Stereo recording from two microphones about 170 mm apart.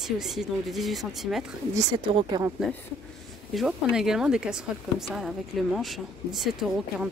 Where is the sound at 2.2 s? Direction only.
25° right (ahead or behind).